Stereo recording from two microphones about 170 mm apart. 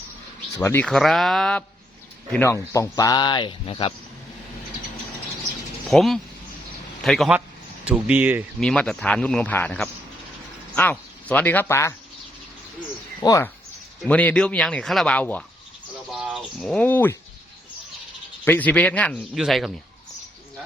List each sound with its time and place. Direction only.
0.6 s speech: 15° left (ahead or behind)
0.9 s speech: centre (ahead or behind)
2.3 s speech: 15° left (ahead or behind)
5.9 s speech: centre (ahead or behind)
8.6 s speech: 5° left (ahead or behind)
13.2 s speech: 20° left (ahead or behind)
14.1 s speech: 10° left (ahead or behind)
16.1 s speech: 5° right (ahead or behind); by 17.2 s 10° left (ahead or behind)
18.4 s speech: 10° left (ahead or behind)